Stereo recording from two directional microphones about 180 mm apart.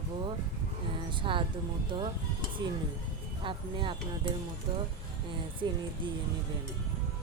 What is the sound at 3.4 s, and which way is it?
Speech, 30° right (ahead or behind).